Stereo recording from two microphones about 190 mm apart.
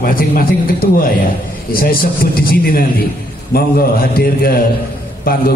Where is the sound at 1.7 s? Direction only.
50° left (ahead or behind).